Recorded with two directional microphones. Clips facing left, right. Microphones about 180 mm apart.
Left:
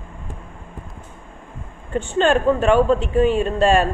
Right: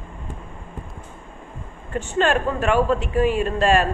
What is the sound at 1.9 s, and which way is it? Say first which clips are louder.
Speech: left 3 dB; 30° left (ahead or behind).